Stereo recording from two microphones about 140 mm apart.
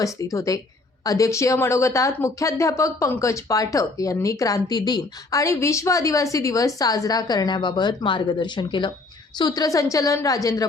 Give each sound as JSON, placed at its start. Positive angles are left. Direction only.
{"t": 0.0, "sound": "a woman's voice", "side_deg": 25}